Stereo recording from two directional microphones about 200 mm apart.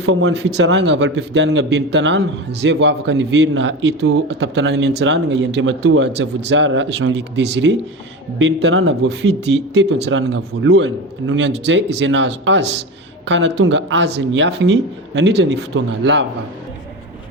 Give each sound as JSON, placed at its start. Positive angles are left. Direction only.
{"t": 0.0, "sound": "speech", "side_deg": -70}